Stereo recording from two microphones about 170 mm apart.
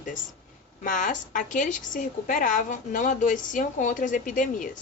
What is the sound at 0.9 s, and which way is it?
A woman's voice, 50° left (ahead or behind).